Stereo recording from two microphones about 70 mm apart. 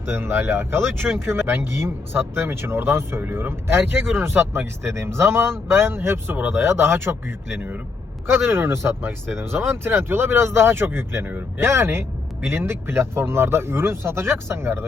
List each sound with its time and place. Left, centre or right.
0.0 s speech: right
8.3 s speech: right